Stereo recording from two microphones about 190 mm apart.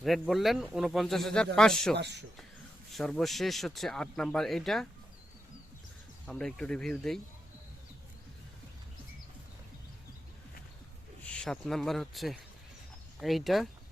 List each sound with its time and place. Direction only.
0.0 s speech: centre (ahead or behind)
2.0 s speech: 65° right (ahead or behind)
2.9 s speech: 5° left (ahead or behind)
6.2 s speech: 5° left (ahead or behind)
11.3 s speech: 5° left (ahead or behind)